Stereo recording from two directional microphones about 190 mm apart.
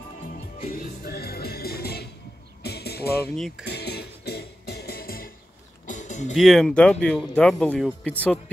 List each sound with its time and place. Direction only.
0.6 s music: 50° left (ahead or behind)
3.3 s speech: centre (ahead or behind)
3.6 s music: 60° left (ahead or behind)
5.9 s music: 40° left (ahead or behind)
6.3 s speech: centre (ahead or behind)